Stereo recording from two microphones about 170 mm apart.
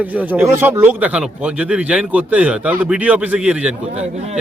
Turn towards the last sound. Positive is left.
turn(degrees=-40)  # may be behind; listen again after turning